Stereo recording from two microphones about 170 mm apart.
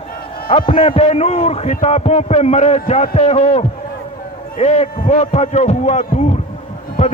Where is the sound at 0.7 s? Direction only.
35° left (ahead or behind).